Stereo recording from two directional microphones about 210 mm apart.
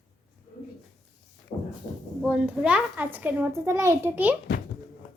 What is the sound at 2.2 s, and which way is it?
A child's voice, 5° right (ahead or behind).